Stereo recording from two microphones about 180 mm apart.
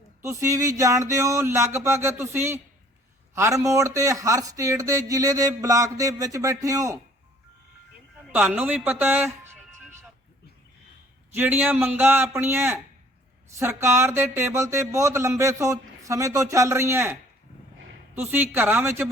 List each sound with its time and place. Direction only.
0.2 s a man's voice: 15° right (ahead or behind)
8.3 s speech: 10° right (ahead or behind)
11.3 s speech: 10° right (ahead or behind)